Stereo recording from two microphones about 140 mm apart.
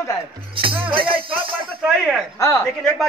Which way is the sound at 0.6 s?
40° right (ahead or behind).